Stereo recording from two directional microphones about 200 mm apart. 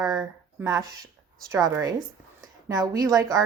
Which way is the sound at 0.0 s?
20° right (ahead or behind).